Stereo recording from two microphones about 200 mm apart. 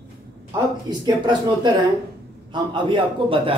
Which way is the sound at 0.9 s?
20° right (ahead or behind).